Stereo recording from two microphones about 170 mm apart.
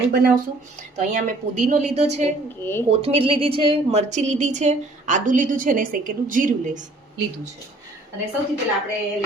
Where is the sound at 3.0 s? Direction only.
35° right (ahead or behind); by 6.8 s 50° right (ahead or behind).